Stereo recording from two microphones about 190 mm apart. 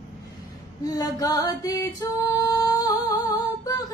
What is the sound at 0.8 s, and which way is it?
Music, 20° left (ahead or behind).